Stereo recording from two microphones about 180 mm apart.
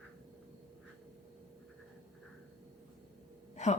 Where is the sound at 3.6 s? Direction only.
40° left (ahead or behind).